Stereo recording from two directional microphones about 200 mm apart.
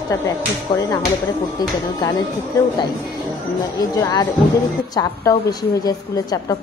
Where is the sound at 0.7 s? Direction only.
15° left (ahead or behind).